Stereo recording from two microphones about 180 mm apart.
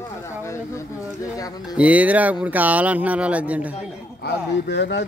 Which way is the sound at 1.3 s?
20° left (ahead or behind).